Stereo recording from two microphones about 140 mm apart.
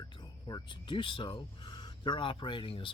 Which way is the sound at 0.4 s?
35° left (ahead or behind).